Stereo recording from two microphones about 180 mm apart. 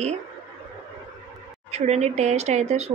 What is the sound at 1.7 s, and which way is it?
A woman's voice, 35° right (ahead or behind).